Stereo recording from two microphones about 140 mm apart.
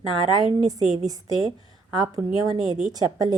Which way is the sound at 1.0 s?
25° right (ahead or behind).